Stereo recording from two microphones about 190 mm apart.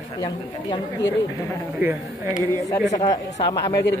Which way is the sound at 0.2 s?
20° left (ahead or behind).